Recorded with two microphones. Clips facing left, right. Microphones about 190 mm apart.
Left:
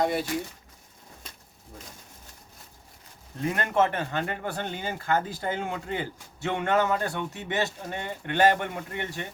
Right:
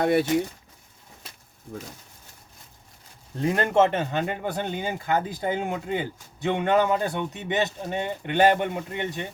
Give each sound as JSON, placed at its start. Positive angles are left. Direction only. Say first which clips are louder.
{"t": 0.0, "sound": "speech", "louder": "right 5 dB", "side_deg": -60}
{"t": 3.3, "sound": "speech", "louder": "right 4 dB", "side_deg": -30}